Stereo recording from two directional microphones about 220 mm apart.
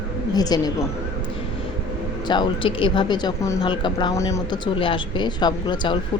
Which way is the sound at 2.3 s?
20° left (ahead or behind).